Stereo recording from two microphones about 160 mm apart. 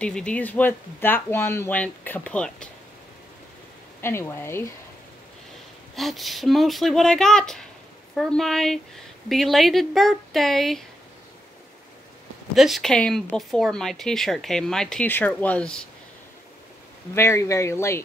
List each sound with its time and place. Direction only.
0.0 s speech: 5° left (ahead or behind)
4.0 s speech: 15° left (ahead or behind)
5.9 s speech: centre (ahead or behind)
12.5 s speech: centre (ahead or behind)
17.1 s speech: 15° left (ahead or behind)